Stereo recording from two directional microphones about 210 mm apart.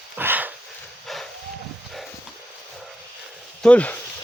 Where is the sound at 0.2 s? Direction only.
10° right (ahead or behind).